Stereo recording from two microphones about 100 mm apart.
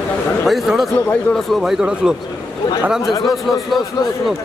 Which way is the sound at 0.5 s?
Centre (ahead or behind).